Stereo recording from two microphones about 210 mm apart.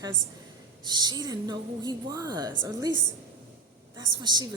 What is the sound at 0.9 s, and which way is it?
A woman's voice, 20° right (ahead or behind).